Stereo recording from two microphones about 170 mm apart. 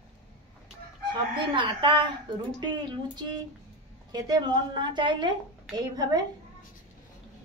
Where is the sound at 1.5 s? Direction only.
30° right (ahead or behind).